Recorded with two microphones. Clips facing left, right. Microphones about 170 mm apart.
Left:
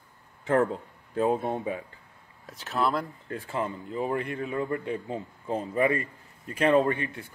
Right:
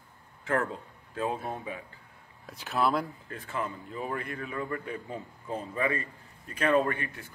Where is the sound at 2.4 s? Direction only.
Centre (ahead or behind).